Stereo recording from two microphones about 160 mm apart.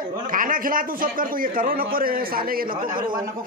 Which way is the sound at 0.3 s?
60° right (ahead or behind).